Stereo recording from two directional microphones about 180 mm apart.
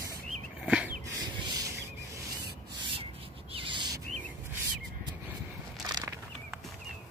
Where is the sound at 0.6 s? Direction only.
5° right (ahead or behind).